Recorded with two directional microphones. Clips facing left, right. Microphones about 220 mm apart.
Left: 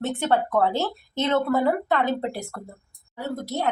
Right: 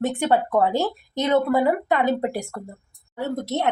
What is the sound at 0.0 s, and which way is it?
A woman's voice, 15° right (ahead or behind).